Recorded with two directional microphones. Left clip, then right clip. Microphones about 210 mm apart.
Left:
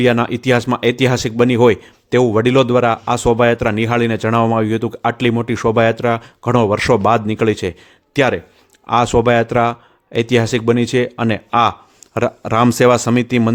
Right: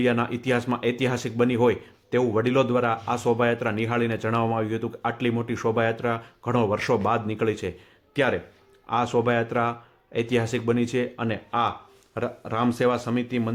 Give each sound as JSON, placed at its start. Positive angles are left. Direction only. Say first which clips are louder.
{"t": 0.0, "sound": "speech", "louder": "left 9 dB", "side_deg": 45}